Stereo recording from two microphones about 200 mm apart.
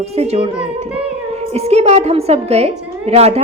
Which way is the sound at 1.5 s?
30° right (ahead or behind).